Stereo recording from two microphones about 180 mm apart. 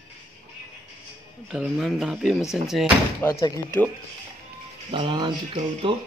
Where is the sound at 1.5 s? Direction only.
Centre (ahead or behind).